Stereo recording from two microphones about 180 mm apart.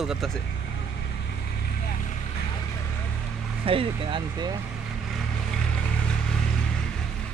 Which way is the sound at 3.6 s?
30° right (ahead or behind).